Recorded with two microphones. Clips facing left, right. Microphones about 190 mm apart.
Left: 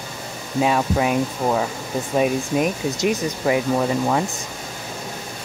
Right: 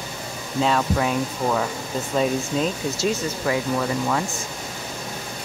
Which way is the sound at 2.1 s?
15° left (ahead or behind).